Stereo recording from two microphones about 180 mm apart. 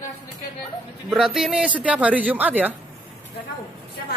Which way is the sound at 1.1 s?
Centre (ahead or behind).